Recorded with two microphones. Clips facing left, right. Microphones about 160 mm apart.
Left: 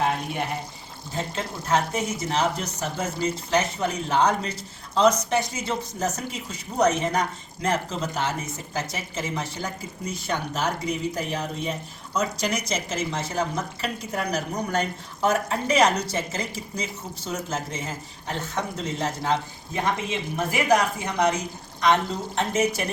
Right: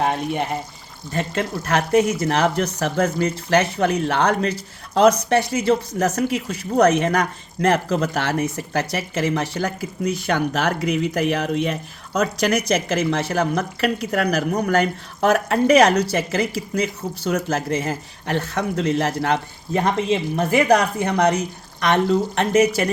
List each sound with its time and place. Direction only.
1.1 s speech: 70° right (ahead or behind)